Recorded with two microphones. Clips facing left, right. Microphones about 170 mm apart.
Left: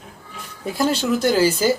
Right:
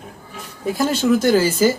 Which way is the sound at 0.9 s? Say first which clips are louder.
Right 4 dB; 50° right (ahead or behind).